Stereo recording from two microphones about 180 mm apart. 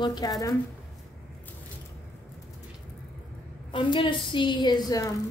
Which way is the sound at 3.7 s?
25° left (ahead or behind).